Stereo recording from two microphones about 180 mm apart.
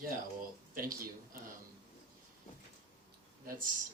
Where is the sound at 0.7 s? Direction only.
50° right (ahead or behind).